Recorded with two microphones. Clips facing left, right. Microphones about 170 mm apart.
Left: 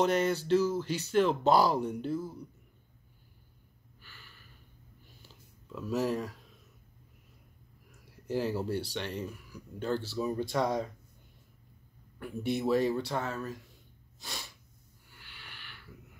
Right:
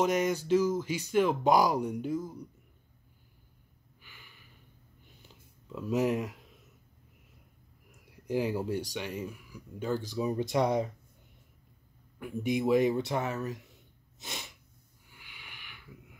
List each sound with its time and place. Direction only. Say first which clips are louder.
0.0 s speech: even; 10° right (ahead or behind)
4.0 s gasp: even; 15° right (ahead or behind)
5.2 s a sound: even; 20° right (ahead or behind)
8.3 s speech: right 1 dB; 15° right (ahead or behind)
12.2 s speech: right 2 dB; 10° right (ahead or behind)
14.2 s sneeze: right 1 dB; 20° right (ahead or behind)
15.0 s a sound: even; 10° right (ahead or behind)